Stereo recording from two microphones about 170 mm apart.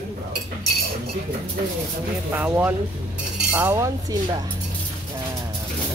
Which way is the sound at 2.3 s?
10° right (ahead or behind).